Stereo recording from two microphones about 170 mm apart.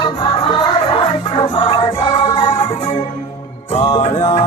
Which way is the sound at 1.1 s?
25° left (ahead or behind).